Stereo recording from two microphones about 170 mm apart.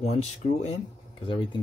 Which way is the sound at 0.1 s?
40° left (ahead or behind).